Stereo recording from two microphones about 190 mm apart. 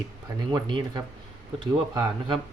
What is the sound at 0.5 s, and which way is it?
Speech, 25° right (ahead or behind).